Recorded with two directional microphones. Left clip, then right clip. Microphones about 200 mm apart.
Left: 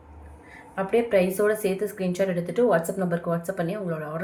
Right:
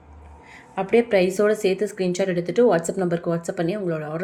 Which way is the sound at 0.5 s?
40° right (ahead or behind).